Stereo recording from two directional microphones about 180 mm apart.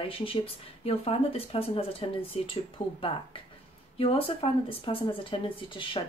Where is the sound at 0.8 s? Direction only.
30° left (ahead or behind).